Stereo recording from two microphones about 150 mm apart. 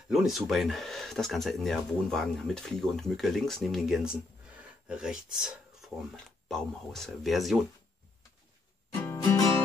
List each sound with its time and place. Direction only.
0.1 s speech: centre (ahead or behind)
9.0 s music: 20° left (ahead or behind)